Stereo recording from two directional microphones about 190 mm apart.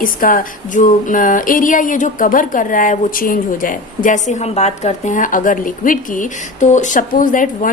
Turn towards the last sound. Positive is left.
turn(degrees=45)  # may be behind; listen again after turning